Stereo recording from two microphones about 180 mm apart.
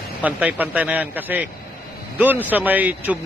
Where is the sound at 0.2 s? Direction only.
10° right (ahead or behind).